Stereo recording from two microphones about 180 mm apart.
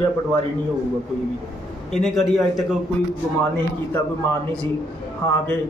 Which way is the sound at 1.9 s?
Centre (ahead or behind).